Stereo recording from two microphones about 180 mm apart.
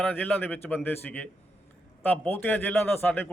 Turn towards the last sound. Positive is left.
turn(degrees=10)  # may be behind; listen again after turning